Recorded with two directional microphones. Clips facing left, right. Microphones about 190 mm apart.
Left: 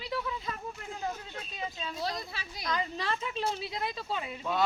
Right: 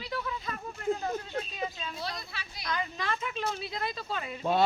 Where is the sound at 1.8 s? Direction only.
40° left (ahead or behind).